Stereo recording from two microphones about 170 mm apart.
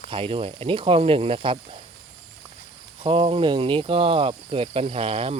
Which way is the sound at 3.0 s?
30° right (ahead or behind).